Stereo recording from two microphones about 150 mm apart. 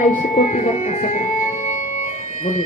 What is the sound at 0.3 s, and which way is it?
Music, 55° left (ahead or behind).